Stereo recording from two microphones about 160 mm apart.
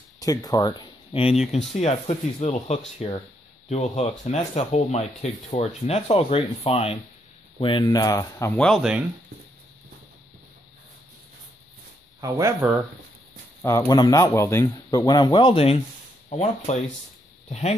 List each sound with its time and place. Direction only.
0.2 s speech: 20° left (ahead or behind)
8.5 s speech: 5° left (ahead or behind)
12.2 s speech: 20° right (ahead or behind)
13.6 s speech: 20° left (ahead or behind); by 17.7 s 40° left (ahead or behind)